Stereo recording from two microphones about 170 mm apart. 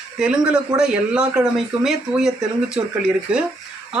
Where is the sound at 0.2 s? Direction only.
5° right (ahead or behind).